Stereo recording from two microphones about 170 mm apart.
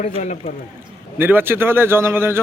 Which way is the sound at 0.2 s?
45° left (ahead or behind).